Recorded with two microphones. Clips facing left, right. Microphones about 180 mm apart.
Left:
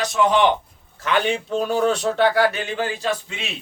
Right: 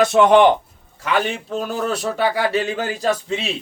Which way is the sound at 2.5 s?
40° right (ahead or behind).